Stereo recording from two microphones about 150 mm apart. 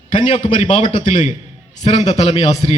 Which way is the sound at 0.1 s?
50° left (ahead or behind).